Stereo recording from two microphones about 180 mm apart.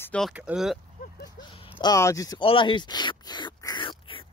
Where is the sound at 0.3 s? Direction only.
5° right (ahead or behind).